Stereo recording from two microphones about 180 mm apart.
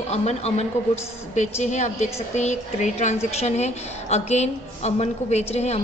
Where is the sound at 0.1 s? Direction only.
35° left (ahead or behind).